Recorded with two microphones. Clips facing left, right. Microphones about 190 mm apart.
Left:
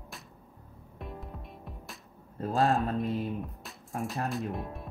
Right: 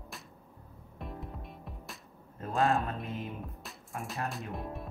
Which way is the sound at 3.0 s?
35° left (ahead or behind).